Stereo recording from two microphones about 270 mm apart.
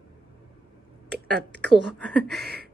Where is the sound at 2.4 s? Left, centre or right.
Right.